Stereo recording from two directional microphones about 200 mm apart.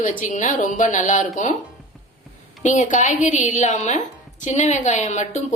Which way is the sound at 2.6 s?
40° left (ahead or behind).